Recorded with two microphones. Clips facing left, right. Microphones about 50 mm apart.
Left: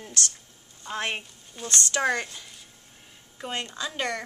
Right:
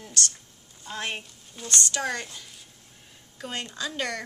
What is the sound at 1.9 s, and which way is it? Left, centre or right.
Speech, left.